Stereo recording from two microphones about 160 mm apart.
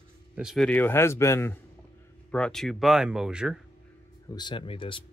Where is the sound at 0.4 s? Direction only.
5° right (ahead or behind).